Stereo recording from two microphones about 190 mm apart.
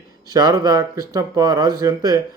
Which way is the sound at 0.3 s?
20° right (ahead or behind).